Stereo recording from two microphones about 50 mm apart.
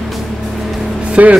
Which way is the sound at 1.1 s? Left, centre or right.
Right.